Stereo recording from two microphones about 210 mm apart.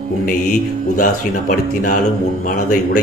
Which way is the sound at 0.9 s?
40° left (ahead or behind).